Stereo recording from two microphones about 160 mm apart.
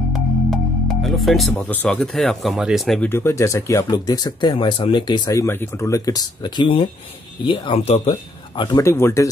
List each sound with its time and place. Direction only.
0.5 s music: centre (ahead or behind)
1.5 s speech: 10° left (ahead or behind)
3.1 s speech: 15° left (ahead or behind)
8.8 s speech: 15° left (ahead or behind)